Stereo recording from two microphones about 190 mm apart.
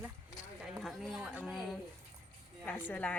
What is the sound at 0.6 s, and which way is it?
Speech, centre (ahead or behind).